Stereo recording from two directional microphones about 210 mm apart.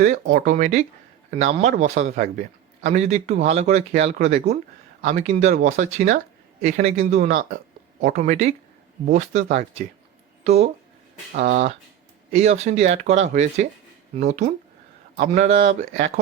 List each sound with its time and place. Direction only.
0.4 s speech: 35° right (ahead or behind)